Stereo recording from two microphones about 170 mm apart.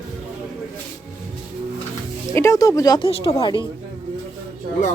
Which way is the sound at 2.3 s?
15° left (ahead or behind).